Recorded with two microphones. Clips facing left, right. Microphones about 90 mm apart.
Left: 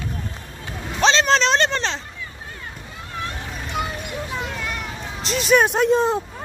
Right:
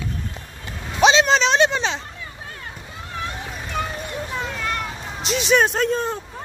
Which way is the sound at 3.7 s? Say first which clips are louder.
Even; 10° left (ahead or behind).